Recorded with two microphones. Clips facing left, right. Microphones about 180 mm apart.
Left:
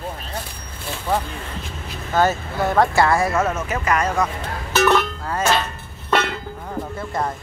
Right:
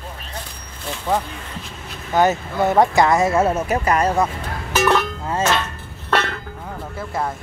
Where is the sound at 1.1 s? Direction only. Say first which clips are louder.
Right 1 dB; 20° right (ahead or behind).